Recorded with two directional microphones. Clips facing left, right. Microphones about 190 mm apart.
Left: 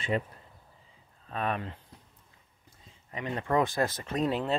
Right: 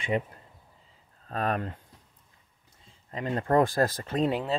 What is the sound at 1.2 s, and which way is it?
Speech, 40° right (ahead or behind).